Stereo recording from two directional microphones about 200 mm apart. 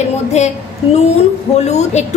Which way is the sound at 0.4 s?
35° left (ahead or behind).